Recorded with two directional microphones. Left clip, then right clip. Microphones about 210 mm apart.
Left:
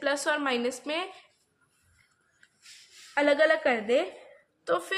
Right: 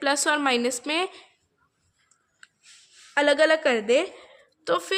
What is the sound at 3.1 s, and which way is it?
A woman's voice, 50° right (ahead or behind).